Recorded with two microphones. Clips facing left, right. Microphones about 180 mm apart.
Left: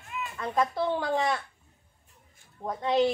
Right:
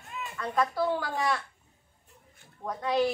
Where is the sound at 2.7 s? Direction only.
25° left (ahead or behind).